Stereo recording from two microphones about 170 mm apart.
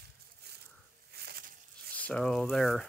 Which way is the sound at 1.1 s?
65° right (ahead or behind).